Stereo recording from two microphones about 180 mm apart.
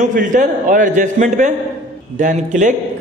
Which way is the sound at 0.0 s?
45° right (ahead or behind).